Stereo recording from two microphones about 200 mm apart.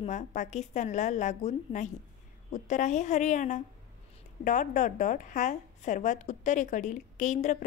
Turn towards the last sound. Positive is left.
turn(degrees=35)  # may be behind; listen again after turning